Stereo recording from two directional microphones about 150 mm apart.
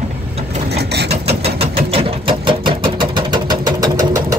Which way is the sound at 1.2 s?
40° right (ahead or behind).